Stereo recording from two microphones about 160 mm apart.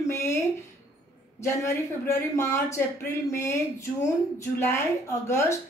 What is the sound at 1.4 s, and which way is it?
Speech, 20° left (ahead or behind).